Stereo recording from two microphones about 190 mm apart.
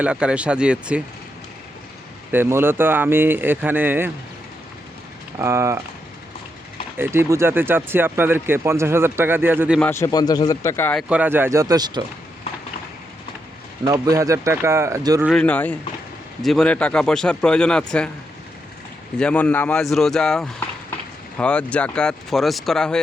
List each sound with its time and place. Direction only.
0.0 s speech: 5° right (ahead or behind)
2.3 s speech: 10° right (ahead or behind)
5.4 s speech: 15° right (ahead or behind)
6.9 s speech: 10° right (ahead or behind)
9.8 s a man's voice: 15° left (ahead or behind)
11.1 s speech: 10° right (ahead or behind)
13.8 s speech: 20° right (ahead or behind)
15.3 s a man's voice: 5° left (ahead or behind)
19.2 s speech: 5° left (ahead or behind)